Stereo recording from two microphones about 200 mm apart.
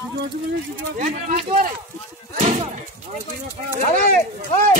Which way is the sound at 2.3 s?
35° right (ahead or behind).